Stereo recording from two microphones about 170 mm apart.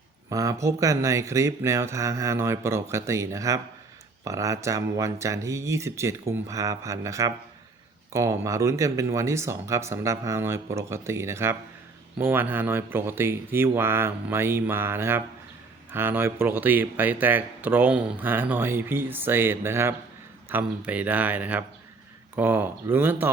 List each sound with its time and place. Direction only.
0.3 s speech: 20° right (ahead or behind)